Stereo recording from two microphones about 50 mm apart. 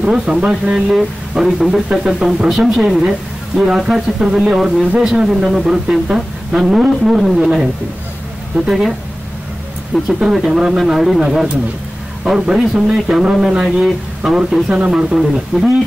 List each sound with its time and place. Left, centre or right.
0.0 s speech: centre
10.0 s speech: centre
12.3 s speech: centre